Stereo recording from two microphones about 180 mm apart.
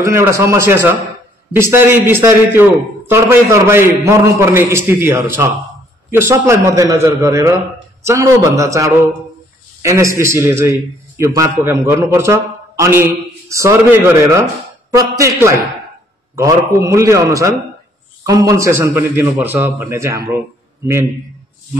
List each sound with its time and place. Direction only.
0.0 s a man's voice: 15° right (ahead or behind)